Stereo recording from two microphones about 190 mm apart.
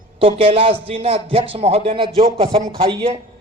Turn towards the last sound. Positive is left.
turn(degrees=-30)  # may be behind; listen again after turning